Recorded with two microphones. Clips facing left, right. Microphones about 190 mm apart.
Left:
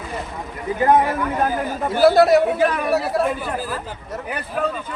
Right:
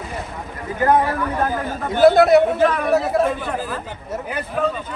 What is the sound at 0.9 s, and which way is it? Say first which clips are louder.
A man's voice: even; 20° left (ahead or behind).